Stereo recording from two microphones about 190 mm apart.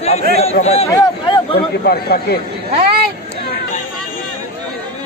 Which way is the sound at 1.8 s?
55° left (ahead or behind).